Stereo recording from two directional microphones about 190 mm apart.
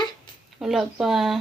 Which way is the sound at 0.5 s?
Centre (ahead or behind).